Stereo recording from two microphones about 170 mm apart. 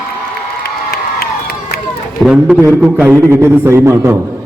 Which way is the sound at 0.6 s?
65° left (ahead or behind).